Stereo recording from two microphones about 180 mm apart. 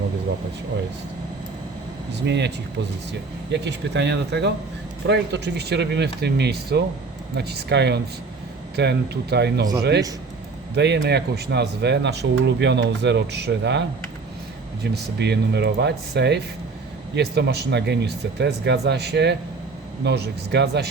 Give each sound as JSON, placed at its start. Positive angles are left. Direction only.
{"t": 2.2, "sound": "speech", "side_deg": -70}
{"t": 10.8, "sound": "speech", "side_deg": -70}
{"t": 14.9, "sound": "speech", "side_deg": -70}